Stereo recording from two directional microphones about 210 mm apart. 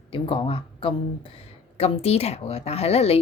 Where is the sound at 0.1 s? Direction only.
25° left (ahead or behind).